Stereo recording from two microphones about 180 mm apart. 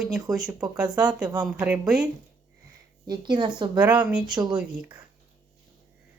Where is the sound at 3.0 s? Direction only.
25° right (ahead or behind).